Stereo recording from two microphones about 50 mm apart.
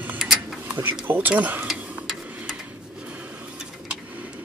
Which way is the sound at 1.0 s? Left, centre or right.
Right.